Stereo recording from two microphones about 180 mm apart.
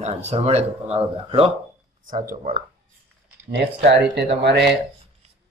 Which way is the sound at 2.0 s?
50° right (ahead or behind).